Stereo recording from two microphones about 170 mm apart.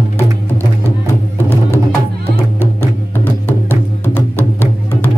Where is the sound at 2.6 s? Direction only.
10° left (ahead or behind).